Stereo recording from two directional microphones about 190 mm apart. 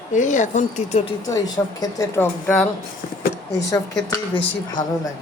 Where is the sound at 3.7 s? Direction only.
20° left (ahead or behind).